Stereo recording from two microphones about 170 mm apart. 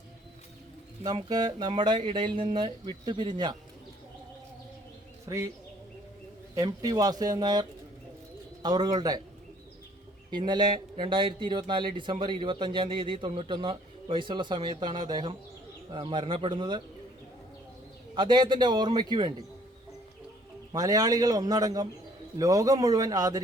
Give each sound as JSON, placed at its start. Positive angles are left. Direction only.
{"t": 1.0, "sound": "a man's voice", "side_deg": -25}
{"t": 5.3, "sound": "a man's voice", "side_deg": -20}
{"t": 6.6, "sound": "a man's voice", "side_deg": -20}
{"t": 10.3, "sound": "a man's voice", "side_deg": -25}
{"t": 18.1, "sound": "a man's voice", "side_deg": -30}
{"t": 20.7, "sound": "a man's voice", "side_deg": -20}